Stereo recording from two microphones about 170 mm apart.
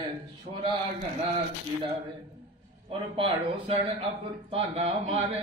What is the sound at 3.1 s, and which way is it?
A man's voice, 35° right (ahead or behind).